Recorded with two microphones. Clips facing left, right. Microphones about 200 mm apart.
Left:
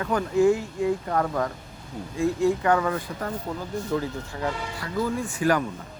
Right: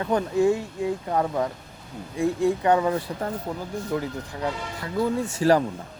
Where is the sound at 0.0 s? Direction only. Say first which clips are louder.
Even; 25° right (ahead or behind).